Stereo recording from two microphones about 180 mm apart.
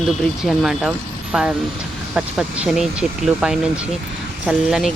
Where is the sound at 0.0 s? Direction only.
Centre (ahead or behind).